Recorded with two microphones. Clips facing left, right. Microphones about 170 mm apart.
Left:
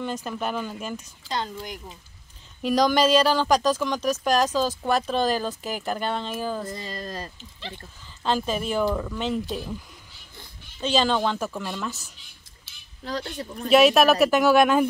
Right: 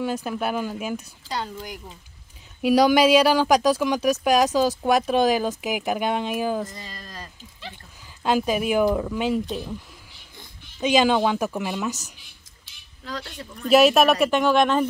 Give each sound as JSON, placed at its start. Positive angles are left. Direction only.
{"t": 0.0, "sound": "speech", "side_deg": -10}
{"t": 6.7, "sound": "speech", "side_deg": 30}
{"t": 8.2, "sound": "speech", "side_deg": -10}
{"t": 9.5, "sound": "speech", "side_deg": 0}
{"t": 10.3, "sound": "speech", "side_deg": -15}
{"t": 13.0, "sound": "speech", "side_deg": 30}
{"t": 13.7, "sound": "speech", "side_deg": 0}